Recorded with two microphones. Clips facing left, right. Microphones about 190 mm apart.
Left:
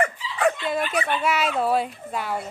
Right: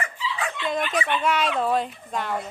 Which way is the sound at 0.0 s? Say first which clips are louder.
Left 8 dB; 60° left (ahead or behind).